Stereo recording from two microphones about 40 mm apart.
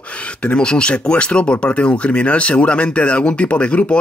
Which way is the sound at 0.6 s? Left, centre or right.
Left.